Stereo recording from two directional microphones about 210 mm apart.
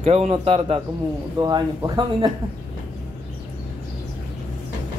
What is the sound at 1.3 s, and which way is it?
Speech, 15° right (ahead or behind).